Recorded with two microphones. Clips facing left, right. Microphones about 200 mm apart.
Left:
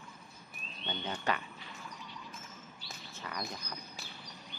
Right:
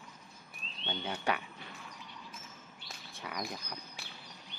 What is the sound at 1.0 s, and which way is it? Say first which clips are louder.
Speech: right 1 dB; 10° right (ahead or behind).